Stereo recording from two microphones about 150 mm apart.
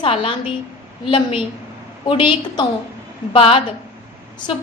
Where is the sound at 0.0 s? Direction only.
35° left (ahead or behind).